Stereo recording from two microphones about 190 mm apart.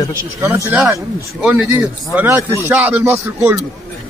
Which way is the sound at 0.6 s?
5° right (ahead or behind).